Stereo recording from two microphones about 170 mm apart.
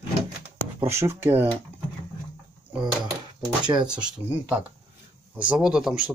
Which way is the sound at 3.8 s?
5° right (ahead or behind).